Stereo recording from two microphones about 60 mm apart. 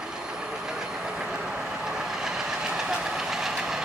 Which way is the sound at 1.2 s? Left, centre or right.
Right.